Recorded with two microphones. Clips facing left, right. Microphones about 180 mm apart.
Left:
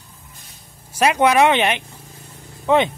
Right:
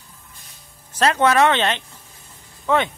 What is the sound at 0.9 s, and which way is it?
Speech, 15° left (ahead or behind).